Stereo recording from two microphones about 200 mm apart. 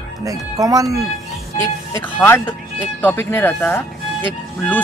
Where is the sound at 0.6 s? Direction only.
15° right (ahead or behind).